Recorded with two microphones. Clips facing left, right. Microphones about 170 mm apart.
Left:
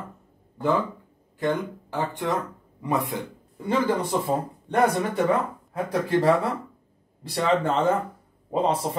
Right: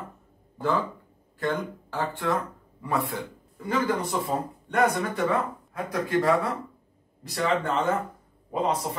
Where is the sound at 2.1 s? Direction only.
20° left (ahead or behind).